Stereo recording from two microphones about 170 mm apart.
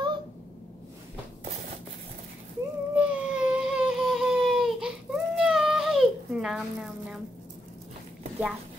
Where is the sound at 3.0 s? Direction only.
5° right (ahead or behind).